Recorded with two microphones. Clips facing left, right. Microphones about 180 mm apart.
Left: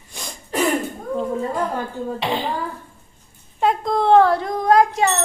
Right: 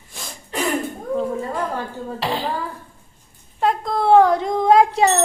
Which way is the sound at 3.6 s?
Centre (ahead or behind).